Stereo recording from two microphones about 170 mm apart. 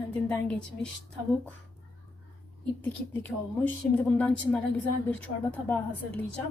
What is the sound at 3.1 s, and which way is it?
Speech, 10° left (ahead or behind).